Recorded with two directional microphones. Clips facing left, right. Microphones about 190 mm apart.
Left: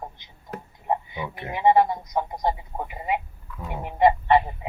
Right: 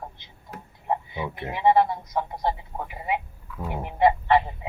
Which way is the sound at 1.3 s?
15° left (ahead or behind).